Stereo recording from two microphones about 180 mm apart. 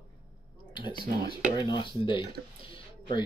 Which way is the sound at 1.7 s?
25° left (ahead or behind).